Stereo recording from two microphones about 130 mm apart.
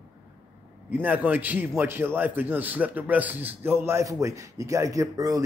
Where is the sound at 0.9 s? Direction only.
10° right (ahead or behind).